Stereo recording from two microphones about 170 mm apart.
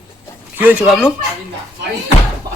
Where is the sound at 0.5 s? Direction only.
10° right (ahead or behind).